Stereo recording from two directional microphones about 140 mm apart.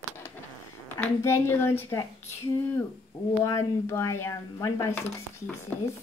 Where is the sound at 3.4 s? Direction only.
20° left (ahead or behind).